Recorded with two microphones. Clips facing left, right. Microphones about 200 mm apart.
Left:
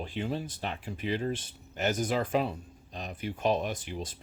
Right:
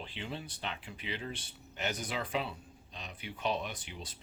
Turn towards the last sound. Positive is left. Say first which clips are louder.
# left 8 dB
turn(degrees=45)  # may be behind; listen again after turning